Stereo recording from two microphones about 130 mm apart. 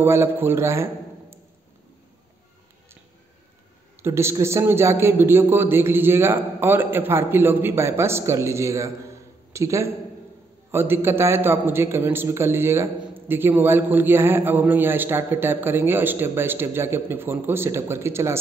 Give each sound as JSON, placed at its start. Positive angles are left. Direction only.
{"t": 0.0, "sound": "a man's voice", "side_deg": -20}
{"t": 4.0, "sound": "a man's voice", "side_deg": -20}